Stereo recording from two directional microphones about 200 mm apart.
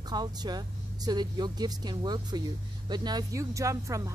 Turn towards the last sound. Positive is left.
turn(degrees=-15)  # may be behind; listen again after turning